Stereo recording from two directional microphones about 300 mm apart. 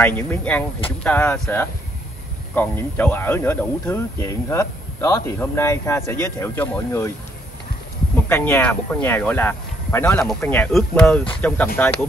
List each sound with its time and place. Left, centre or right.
0.0 s speech: centre
8.3 s speech: centre